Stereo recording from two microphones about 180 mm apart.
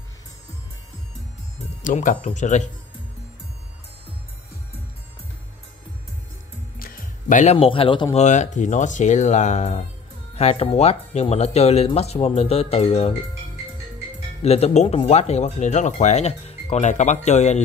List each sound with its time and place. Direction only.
1.8 s speech: 45° left (ahead or behind)
6.8 s music: 50° left (ahead or behind)
7.5 s speech: 30° left (ahead or behind)
14.4 s speech: 35° left (ahead or behind)